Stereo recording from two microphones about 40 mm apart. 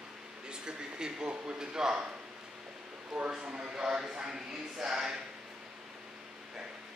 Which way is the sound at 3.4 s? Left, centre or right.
Right.